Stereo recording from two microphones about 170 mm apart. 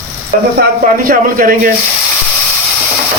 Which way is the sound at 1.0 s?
55° right (ahead or behind).